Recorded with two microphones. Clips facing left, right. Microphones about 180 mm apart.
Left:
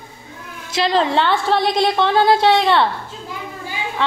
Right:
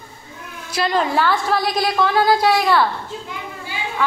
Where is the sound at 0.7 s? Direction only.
25° left (ahead or behind).